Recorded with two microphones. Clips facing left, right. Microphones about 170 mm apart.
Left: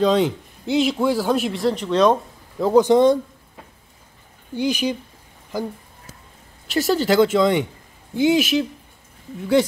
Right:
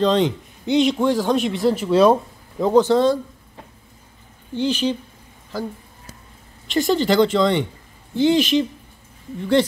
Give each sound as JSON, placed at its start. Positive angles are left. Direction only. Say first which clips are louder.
{"t": 0.0, "sound": "a man's voice", "louder": "even", "side_deg": 5}
{"t": 2.6, "sound": "speech", "louder": "left 1 dB", "side_deg": 10}
{"t": 4.6, "sound": "speech", "louder": "right 1 dB", "side_deg": 10}
{"t": 6.7, "sound": "speech", "louder": "right 1 dB", "side_deg": 5}